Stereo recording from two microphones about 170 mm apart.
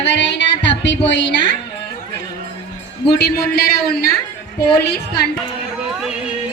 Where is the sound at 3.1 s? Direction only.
70° left (ahead or behind).